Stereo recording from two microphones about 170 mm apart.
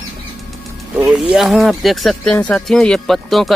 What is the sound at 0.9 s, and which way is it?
Speech, 5° right (ahead or behind).